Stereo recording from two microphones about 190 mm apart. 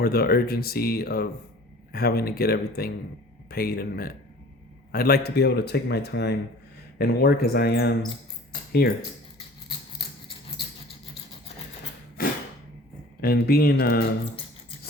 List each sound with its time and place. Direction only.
0.0 s speech: 55° left (ahead or behind)
12.2 s a sound: 50° left (ahead or behind)
13.2 s speech: 55° left (ahead or behind)